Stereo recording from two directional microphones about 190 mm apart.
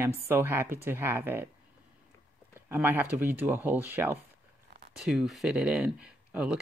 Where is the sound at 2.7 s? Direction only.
10° right (ahead or behind).